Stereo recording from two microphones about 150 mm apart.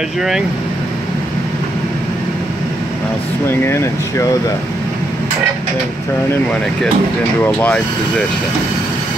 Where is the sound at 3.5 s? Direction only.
15° left (ahead or behind).